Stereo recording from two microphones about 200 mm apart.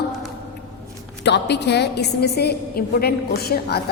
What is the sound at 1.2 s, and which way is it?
A woman's voice, 60° left (ahead or behind).